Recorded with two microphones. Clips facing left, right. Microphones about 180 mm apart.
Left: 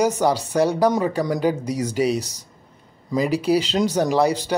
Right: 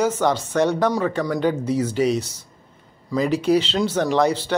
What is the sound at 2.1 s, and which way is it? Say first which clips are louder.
Speech: right 1 dB; 40° left (ahead or behind).